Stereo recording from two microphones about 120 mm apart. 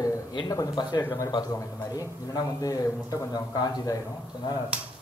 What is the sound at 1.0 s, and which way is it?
A man's voice, 25° left (ahead or behind).